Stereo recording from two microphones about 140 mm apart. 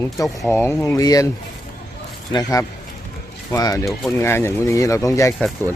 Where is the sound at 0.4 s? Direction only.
15° left (ahead or behind).